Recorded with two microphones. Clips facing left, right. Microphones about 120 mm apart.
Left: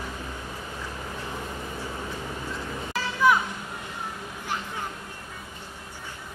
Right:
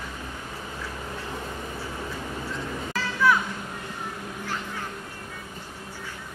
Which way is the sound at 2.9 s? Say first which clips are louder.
Left 1 dB; 20° left (ahead or behind).